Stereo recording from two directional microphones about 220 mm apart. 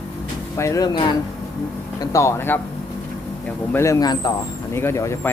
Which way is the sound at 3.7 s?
10° left (ahead or behind).